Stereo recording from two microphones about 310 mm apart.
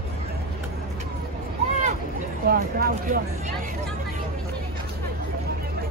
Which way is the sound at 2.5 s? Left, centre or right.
Right.